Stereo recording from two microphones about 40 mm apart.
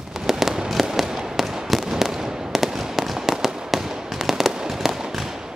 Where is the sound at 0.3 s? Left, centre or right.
Centre.